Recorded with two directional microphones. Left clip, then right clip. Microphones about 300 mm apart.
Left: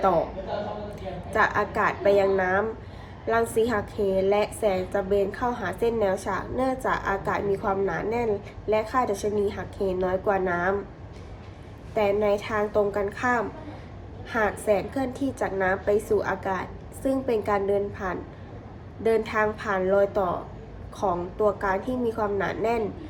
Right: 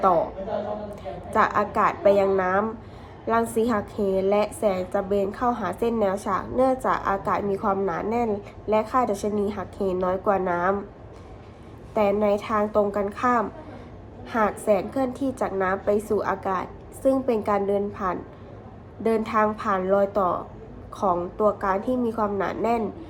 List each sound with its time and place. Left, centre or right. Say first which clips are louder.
1.3 s a woman's voice: right 2 dB; centre
11.9 s a woman's voice: right 1 dB; centre